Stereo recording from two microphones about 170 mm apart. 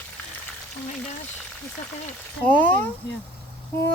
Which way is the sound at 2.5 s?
10° left (ahead or behind).